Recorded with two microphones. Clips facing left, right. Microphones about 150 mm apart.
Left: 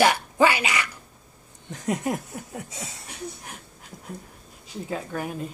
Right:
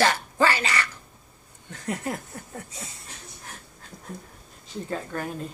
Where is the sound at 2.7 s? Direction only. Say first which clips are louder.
Left 3 dB; 75° left (ahead or behind).